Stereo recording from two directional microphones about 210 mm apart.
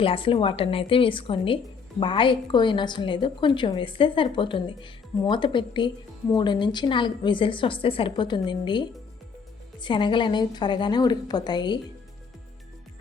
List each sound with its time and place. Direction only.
0.0 s a woman's voice: 25° left (ahead or behind)